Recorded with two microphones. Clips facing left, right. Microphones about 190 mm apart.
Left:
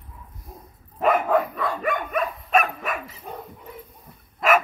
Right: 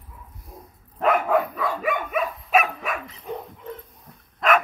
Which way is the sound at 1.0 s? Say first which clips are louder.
Even; centre (ahead or behind).